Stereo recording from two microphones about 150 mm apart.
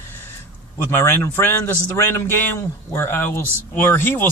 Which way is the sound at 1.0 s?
15° left (ahead or behind).